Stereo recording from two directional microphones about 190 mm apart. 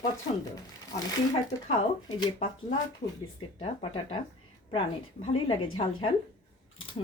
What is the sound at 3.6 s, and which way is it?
Speech, 30° left (ahead or behind).